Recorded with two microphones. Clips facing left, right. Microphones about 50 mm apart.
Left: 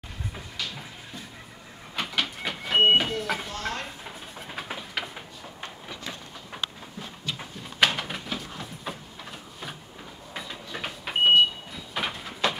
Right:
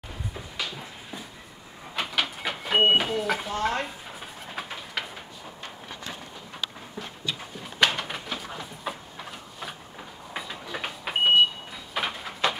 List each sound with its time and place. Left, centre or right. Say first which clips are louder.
2.0 s vehicle: right 1 dB; centre
3.5 s speech: right 6 dB; centre
4.6 s bird: even; centre
7.8 s bird: even; centre
8.5 s a sound: right 2 dB; centre
10.3 s vehicle: right 2 dB; centre